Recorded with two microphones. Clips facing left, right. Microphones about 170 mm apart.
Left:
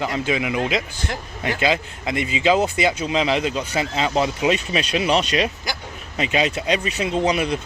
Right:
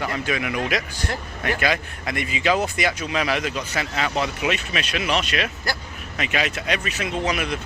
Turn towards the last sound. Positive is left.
turn(degrees=30)  # may be behind; listen again after turning